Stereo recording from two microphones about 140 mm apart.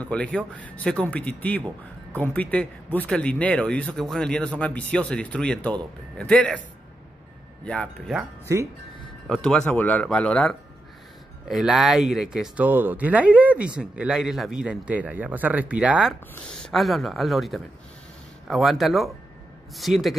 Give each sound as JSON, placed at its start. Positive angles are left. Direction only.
{"t": 0.0, "sound": "speech", "side_deg": 10}
{"t": 7.6, "sound": "speech", "side_deg": 5}
{"t": 8.5, "sound": "speech", "side_deg": -25}
{"t": 9.3, "sound": "speech", "side_deg": 5}